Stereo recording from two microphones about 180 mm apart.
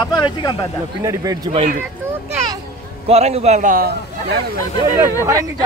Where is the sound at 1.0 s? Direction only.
20° right (ahead or behind).